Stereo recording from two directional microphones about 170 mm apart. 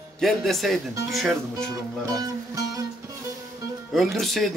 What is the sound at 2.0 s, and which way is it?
Music, 20° right (ahead or behind).